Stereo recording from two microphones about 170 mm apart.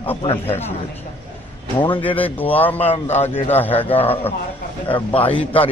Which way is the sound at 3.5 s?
10° left (ahead or behind).